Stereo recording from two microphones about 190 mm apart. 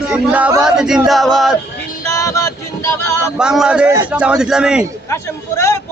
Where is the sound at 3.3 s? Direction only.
5° right (ahead or behind).